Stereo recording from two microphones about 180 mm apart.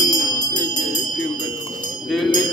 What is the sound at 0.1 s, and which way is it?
Music, 20° left (ahead or behind).